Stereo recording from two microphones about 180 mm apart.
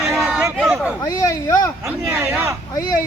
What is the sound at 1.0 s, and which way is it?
Speech, 20° left (ahead or behind).